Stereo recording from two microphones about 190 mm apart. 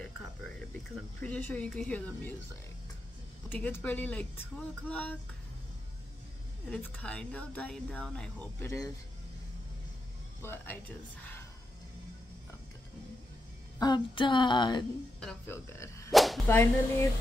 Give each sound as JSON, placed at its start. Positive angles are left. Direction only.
{"t": 1.2, "sound": "speech", "side_deg": 10}
{"t": 3.4, "sound": "speech", "side_deg": 10}
{"t": 6.7, "sound": "speech", "side_deg": 5}
{"t": 10.4, "sound": "speech", "side_deg": 10}
{"t": 13.7, "sound": "a woman's voice", "side_deg": 20}
{"t": 15.1, "sound": "speech", "side_deg": 10}
{"t": 16.1, "sound": "whip", "side_deg": 0}
{"t": 16.4, "sound": "speech", "side_deg": 15}